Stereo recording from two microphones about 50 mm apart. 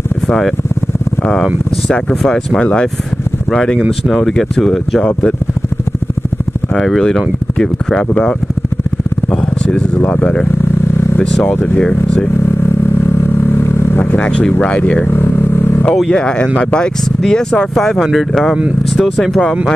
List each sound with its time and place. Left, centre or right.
2.0 s speech: centre
6.7 s speech: centre
9.7 s speech: left
13.0 s vehicle: left
14.1 s speech: left
15.0 s vehicle: left
16.1 s speech: centre